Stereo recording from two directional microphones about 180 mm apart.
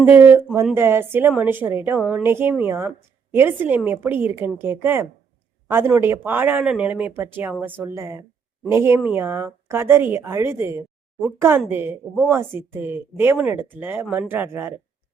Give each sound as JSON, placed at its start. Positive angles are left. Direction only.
{"t": 0.0, "sound": "speech", "side_deg": -10}